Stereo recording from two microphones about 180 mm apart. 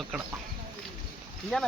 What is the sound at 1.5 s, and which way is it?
Speech, centre (ahead or behind).